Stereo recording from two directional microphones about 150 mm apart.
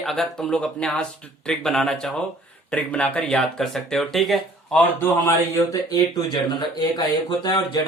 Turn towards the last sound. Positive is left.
turn(degrees=25)  # may be behind; listen again after turning